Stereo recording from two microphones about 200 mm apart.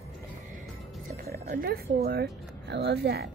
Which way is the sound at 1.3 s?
50° right (ahead or behind).